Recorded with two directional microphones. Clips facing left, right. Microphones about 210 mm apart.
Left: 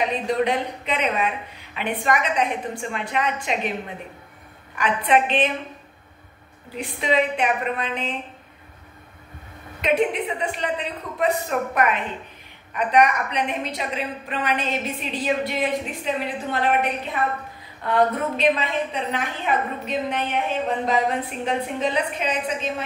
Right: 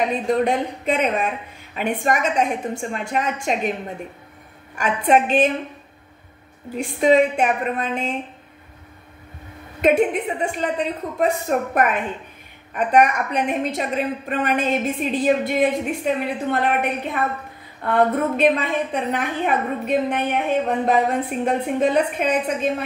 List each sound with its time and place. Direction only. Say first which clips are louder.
0.1 s a woman's voice: right 3 dB; 50° right (ahead or behind)
4.7 s a woman's voice: right 2 dB; 45° right (ahead or behind)
6.7 s a woman's voice: right 7 dB; 45° right (ahead or behind)
9.8 s a woman's voice: right 4 dB; 50° right (ahead or behind)
17.8 s a woman's voice: right 2 dB; 50° right (ahead or behind)